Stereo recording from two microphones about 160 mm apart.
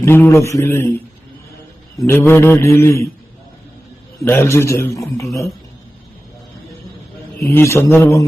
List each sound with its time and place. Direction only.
0.0 s a man's voice: 15° left (ahead or behind)
2.0 s a man's voice: 15° left (ahead or behind)
4.3 s a man's voice: 15° left (ahead or behind)
7.4 s a man's voice: 15° left (ahead or behind)